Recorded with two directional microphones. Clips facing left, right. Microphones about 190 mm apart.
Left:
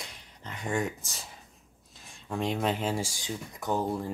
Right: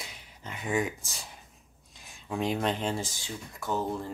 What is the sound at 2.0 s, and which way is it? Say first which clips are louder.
Speech: right 1 dB; centre (ahead or behind).